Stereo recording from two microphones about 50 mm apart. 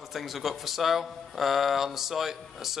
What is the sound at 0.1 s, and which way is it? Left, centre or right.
Speech, centre.